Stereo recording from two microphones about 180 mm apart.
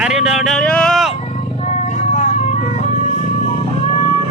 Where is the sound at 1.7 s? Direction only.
40° left (ahead or behind).